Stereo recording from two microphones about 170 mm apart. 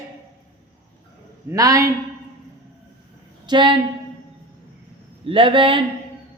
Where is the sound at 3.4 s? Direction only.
30° right (ahead or behind).